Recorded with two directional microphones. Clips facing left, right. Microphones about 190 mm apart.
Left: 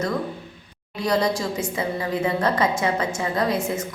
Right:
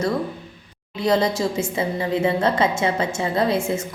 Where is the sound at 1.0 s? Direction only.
25° right (ahead or behind).